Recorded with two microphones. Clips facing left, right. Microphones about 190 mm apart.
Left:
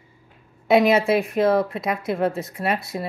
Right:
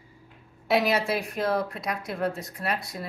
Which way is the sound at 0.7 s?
Centre (ahead or behind).